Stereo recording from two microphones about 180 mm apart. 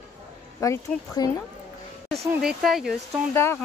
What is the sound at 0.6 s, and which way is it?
Speech, 20° left (ahead or behind).